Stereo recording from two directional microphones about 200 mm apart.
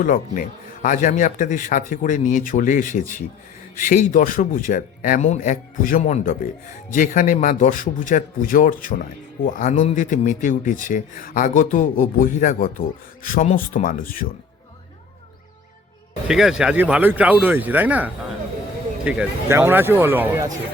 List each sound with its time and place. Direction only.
0.0 s a man's voice: 40° left (ahead or behind)
16.2 s speech: 5° right (ahead or behind)